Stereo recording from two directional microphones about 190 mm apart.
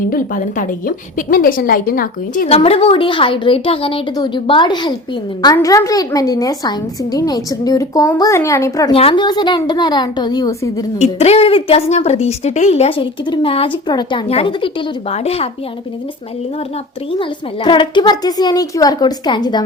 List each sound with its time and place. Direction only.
0.1 s a woman's voice: 45° left (ahead or behind)
2.5 s a child's voice: 30° left (ahead or behind)
8.9 s a child's voice: 30° left (ahead or behind)
10.9 s a child's voice: 35° left (ahead or behind)
17.1 s a child's voice: 25° left (ahead or behind)